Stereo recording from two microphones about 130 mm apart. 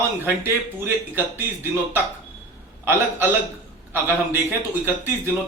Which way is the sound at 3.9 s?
20° right (ahead or behind).